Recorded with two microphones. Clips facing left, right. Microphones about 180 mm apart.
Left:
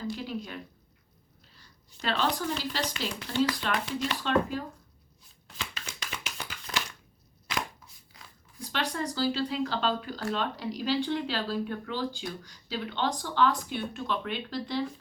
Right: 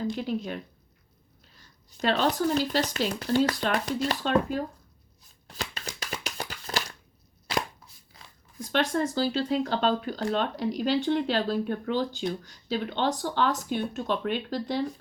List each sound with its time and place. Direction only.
0.3 s speech: 45° right (ahead or behind)
2.0 s speech: 40° right (ahead or behind)
5.5 s a sound: 40° right (ahead or behind)
8.5 s speech: 45° right (ahead or behind)